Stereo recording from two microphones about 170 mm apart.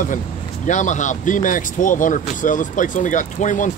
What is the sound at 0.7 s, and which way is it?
Speech, 45° left (ahead or behind).